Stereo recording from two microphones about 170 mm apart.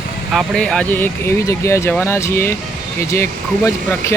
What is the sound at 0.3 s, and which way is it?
Speech, centre (ahead or behind).